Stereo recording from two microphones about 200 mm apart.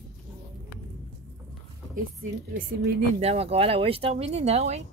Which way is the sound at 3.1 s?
30° right (ahead or behind).